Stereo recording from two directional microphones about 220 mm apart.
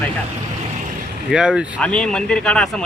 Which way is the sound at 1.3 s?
5° right (ahead or behind).